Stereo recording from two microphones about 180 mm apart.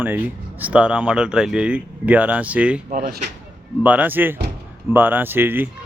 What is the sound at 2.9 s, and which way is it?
Speech, 50° right (ahead or behind).